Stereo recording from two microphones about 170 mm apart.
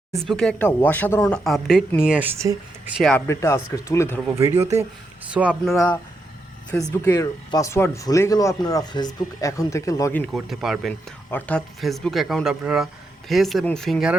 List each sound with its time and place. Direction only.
0.2 s speech: centre (ahead or behind)
1.5 s speech: centre (ahead or behind)
3.0 s speech: 5° left (ahead or behind)
3.2 s speech: 15° left (ahead or behind)
4.4 s speech: 20° right (ahead or behind)
6.9 s speech: 15° left (ahead or behind)
10.3 s speech: centre (ahead or behind)
11.3 s speech: 10° left (ahead or behind)